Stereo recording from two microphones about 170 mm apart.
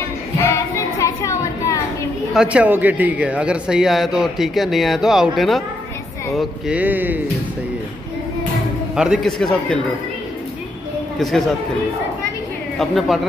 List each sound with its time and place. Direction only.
0.9 s a sound: 20° left (ahead or behind)
2.3 s speech: 5° right (ahead or behind)
8.9 s speech: 5° right (ahead or behind)
11.1 s speech: 5° left (ahead or behind)
12.7 s speech: centre (ahead or behind)